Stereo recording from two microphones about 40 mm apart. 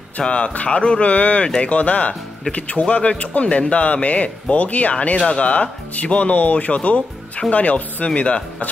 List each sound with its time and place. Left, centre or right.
0.2 s speech: left
5.3 s speech: left